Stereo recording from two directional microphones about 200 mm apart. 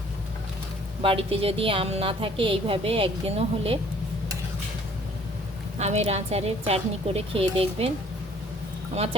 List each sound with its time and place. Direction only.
1.0 s a woman's voice: 30° right (ahead or behind)
6.1 s speech: 30° right (ahead or behind)